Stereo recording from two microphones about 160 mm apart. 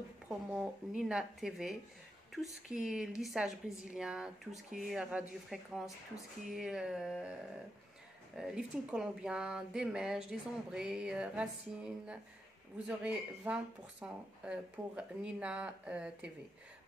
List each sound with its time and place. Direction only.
0.3 s speech: 5° right (ahead or behind)
8.4 s speech: 5° right (ahead or behind)